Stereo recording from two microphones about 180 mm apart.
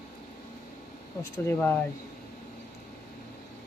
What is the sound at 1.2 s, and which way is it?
Speech, 10° left (ahead or behind).